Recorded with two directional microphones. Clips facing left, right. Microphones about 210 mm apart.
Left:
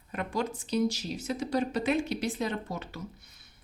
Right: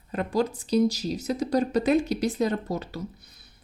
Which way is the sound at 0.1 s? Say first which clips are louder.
Right 6 dB; 35° right (ahead or behind).